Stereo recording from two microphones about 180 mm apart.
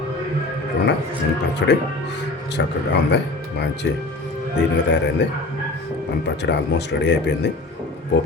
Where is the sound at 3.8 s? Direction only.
90° left.